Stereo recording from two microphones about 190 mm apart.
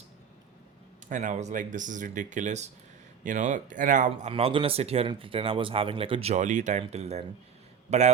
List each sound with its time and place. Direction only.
1.1 s a man's voice: 40° right (ahead or behind)